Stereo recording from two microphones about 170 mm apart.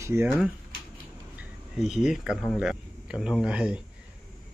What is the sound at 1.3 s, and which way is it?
Speech, 5° right (ahead or behind).